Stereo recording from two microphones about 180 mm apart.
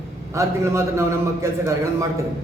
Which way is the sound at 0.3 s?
15° right (ahead or behind).